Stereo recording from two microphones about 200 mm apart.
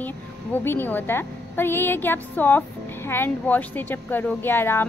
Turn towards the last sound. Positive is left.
turn(degrees=10)  # may be behind; listen again after turning